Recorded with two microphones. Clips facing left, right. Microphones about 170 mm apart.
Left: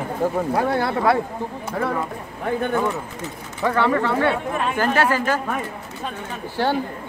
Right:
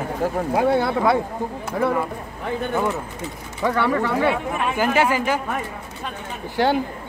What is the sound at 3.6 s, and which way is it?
Speech, 10° right (ahead or behind).